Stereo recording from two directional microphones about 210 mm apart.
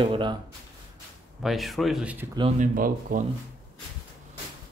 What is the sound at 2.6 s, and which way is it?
Speech, 40° right (ahead or behind).